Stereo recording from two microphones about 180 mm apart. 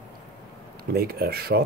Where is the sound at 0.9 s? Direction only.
60° right (ahead or behind).